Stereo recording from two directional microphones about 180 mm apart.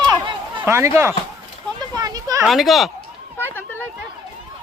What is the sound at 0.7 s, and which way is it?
Speech, 15° right (ahead or behind).